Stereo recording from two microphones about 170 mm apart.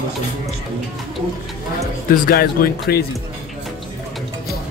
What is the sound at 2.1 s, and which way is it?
Speech, 60° left (ahead or behind).